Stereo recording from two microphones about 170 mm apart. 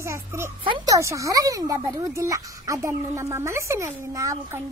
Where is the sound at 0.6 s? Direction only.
30° right (ahead or behind).